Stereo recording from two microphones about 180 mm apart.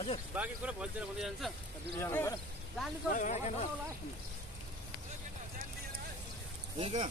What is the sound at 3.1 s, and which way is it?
Speech, 40° left (ahead or behind).